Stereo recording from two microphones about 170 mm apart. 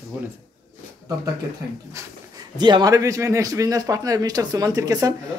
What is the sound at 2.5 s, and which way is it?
Speech, 25° right (ahead or behind).